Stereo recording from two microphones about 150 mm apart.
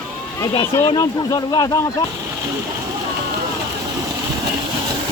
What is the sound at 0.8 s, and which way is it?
Speech, 25° left (ahead or behind).